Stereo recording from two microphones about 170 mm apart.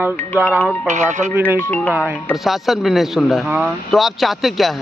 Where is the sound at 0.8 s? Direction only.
45° right (ahead or behind).